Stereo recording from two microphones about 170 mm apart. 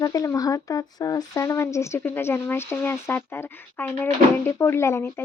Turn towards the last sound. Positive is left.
turn(degrees=15)  # may be behind; listen again after turning